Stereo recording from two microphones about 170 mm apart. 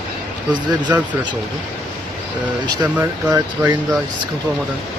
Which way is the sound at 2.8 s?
15° right (ahead or behind).